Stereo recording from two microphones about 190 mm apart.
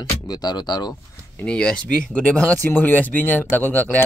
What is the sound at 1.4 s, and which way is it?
Speech, 5° left (ahead or behind).